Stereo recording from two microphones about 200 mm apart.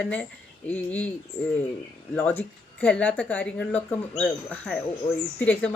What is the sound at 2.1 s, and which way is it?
A woman's voice, 10° left (ahead or behind).